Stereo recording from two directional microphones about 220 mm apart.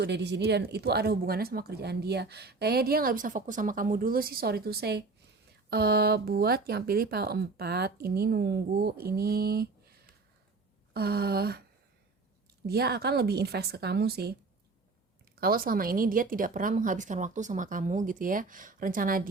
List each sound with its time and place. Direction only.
0.0 s speech: 50° right (ahead or behind)
12.6 s speech: 45° right (ahead or behind)
15.4 s a woman's voice: 40° right (ahead or behind)